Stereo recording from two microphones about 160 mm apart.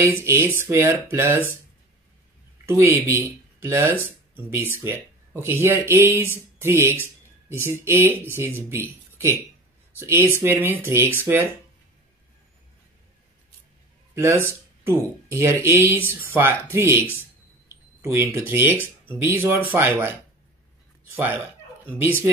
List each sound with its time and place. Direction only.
0.0 s speech: 15° right (ahead or behind)
2.6 s speech: 15° right (ahead or behind)
14.1 s speech: 15° right (ahead or behind)
18.0 s speech: 15° right (ahead or behind)
21.9 s speech: 15° right (ahead or behind)